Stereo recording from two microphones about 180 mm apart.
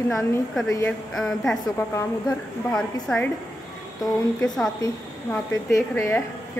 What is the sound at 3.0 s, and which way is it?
Speech, 10° left (ahead or behind).